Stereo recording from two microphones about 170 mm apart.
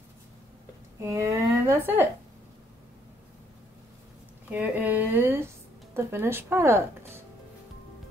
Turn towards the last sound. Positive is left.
turn(degrees=-15)  # may be behind; listen again after turning